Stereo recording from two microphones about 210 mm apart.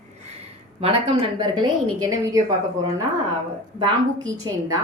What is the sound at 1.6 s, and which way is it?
Speech, 15° right (ahead or behind).